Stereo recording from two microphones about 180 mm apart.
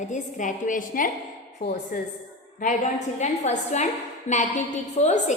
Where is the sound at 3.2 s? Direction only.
40° left (ahead or behind).